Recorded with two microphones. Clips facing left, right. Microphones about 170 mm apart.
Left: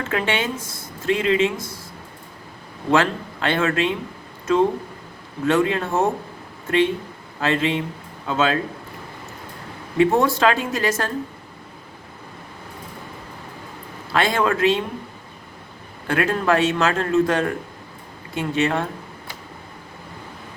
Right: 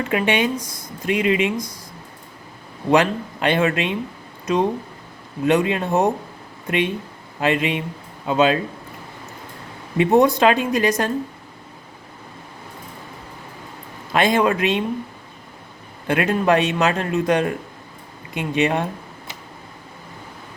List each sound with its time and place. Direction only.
0.0 s speech: 15° right (ahead or behind)
2.9 s speech: 15° right (ahead or behind)
10.0 s speech: 20° right (ahead or behind)
14.1 s speech: 20° right (ahead or behind)
16.0 s speech: 20° right (ahead or behind)